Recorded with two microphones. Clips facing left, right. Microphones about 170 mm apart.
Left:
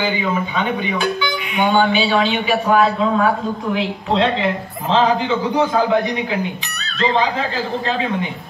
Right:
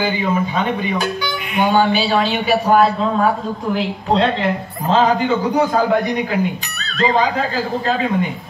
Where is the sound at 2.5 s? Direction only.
40° right (ahead or behind).